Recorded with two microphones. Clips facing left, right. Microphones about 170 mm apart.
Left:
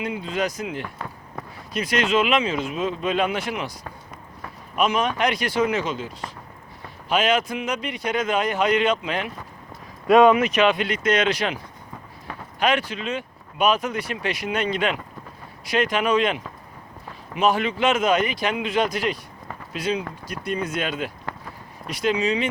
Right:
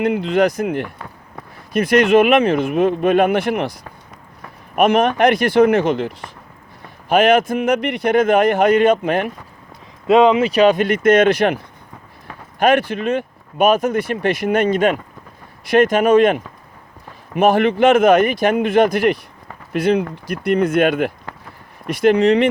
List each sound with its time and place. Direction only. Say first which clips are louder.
0.0 s speech: right 10 dB; 65° right (ahead or behind)
10.1 s speech: right 3 dB; 20° right (ahead or behind); by 22.4 s 65° right (ahead or behind)